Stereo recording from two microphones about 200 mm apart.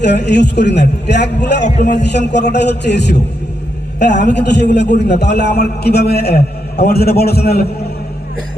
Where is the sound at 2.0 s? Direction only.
60° left (ahead or behind).